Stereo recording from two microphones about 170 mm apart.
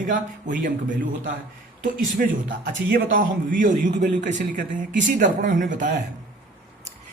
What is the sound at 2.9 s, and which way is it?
A man's voice, 55° right (ahead or behind).